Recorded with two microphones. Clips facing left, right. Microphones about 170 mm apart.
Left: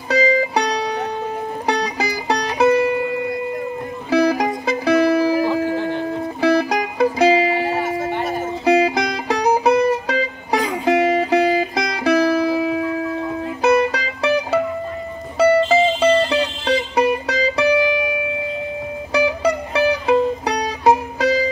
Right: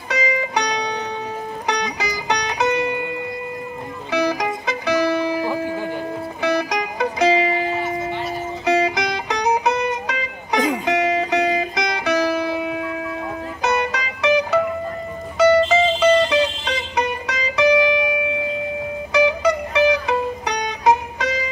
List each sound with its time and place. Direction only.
0.1 s music: 30° left (ahead or behind)
4.1 s music: 30° left (ahead or behind)
6.4 s music: 30° left (ahead or behind)
7.7 s music: 50° left (ahead or behind)
8.6 s music: 30° left (ahead or behind)
19.1 s music: 30° left (ahead or behind)